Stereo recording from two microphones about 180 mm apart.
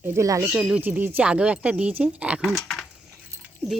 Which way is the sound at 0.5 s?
5° right (ahead or behind).